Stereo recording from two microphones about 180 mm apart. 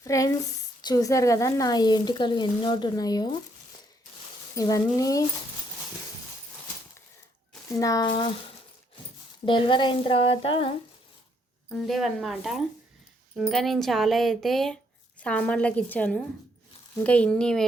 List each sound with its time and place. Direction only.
0.0 s speech: 20° left (ahead or behind)
4.5 s speech: 20° left (ahead or behind)
7.8 s speech: 20° left (ahead or behind)
9.5 s speech: 25° left (ahead or behind)
11.7 s a woman's voice: centre (ahead or behind)